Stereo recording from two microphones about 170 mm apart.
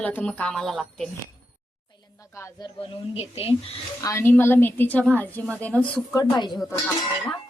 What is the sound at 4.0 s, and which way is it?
A woman's voice, 15° left (ahead or behind).